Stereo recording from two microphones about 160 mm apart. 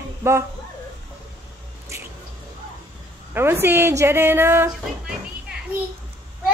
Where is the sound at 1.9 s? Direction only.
20° right (ahead or behind).